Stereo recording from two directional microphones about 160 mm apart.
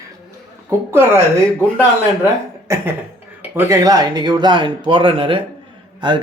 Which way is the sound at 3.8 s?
25° right (ahead or behind).